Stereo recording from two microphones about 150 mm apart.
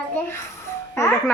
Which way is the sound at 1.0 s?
15° left (ahead or behind).